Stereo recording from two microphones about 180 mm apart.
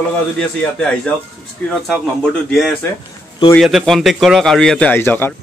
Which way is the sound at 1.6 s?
10° left (ahead or behind).